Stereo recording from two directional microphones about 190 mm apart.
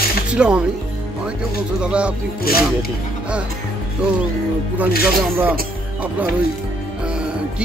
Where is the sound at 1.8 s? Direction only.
5° right (ahead or behind).